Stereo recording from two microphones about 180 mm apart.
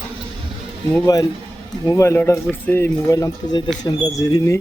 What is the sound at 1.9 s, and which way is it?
Speech, 15° left (ahead or behind).